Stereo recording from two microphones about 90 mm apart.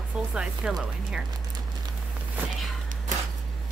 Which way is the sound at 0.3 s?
10° right (ahead or behind).